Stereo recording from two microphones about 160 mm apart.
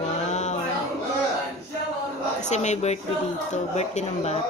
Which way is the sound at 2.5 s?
45° left (ahead or behind).